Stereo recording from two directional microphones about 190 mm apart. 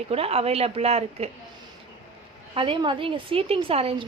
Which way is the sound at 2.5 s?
25° right (ahead or behind).